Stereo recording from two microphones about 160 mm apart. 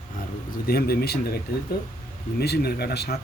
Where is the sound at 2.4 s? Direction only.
80° left.